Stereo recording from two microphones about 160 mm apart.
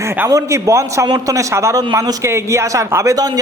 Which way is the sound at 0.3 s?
20° right (ahead or behind).